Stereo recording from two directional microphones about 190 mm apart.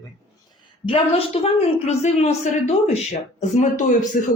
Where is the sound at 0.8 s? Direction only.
30° left (ahead or behind).